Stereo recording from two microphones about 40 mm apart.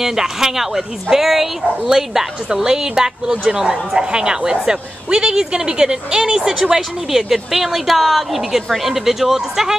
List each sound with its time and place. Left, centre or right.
0.0 s a woman's voice: centre